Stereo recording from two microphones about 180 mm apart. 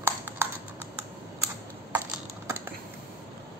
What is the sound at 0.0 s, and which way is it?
Typing, 15° right (ahead or behind).